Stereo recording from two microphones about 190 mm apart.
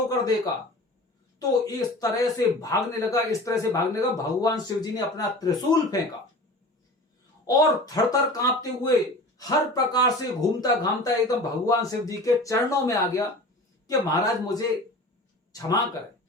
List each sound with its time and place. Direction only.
0.1 s a man's voice: 20° left (ahead or behind)
7.4 s a man's voice: 20° left (ahead or behind)